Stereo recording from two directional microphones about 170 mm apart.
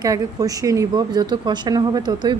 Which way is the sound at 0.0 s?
20° right (ahead or behind).